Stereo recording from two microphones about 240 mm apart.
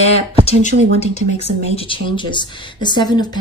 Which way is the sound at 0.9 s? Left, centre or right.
Left.